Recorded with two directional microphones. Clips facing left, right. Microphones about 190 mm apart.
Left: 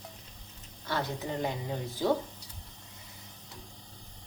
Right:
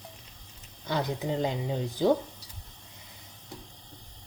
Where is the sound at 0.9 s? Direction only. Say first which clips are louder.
Right 4 dB; 15° right (ahead or behind).